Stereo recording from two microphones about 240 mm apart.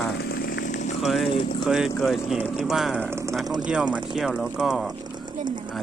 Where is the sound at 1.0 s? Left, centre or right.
Centre.